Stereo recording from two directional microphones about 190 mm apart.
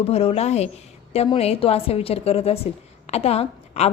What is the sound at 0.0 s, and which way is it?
A woman's voice, 30° left (ahead or behind).